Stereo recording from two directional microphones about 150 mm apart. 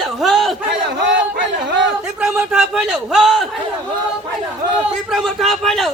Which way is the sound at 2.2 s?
Centre (ahead or behind).